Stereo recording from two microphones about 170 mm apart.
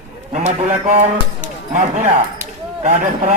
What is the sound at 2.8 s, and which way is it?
Speech, 50° right (ahead or behind).